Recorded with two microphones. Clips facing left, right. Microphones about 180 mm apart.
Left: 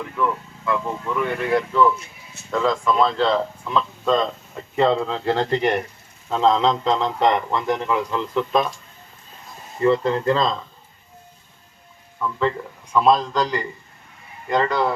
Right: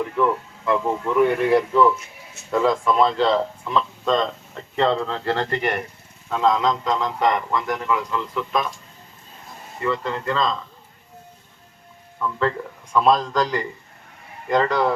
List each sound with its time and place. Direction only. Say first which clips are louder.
0.2 s speech: right 1 dB; 25° right (ahead or behind)
1.5 s speech: left 2 dB; 10° right (ahead or behind); by 8.7 s 30° left (ahead or behind)
9.8 s speech: left 7 dB; 35° left (ahead or behind)
12.2 s speech: even; 5° left (ahead or behind)